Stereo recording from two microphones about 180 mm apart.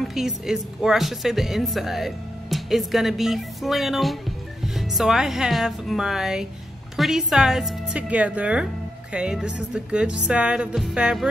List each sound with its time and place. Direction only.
0.1 s speech: 5° right (ahead or behind)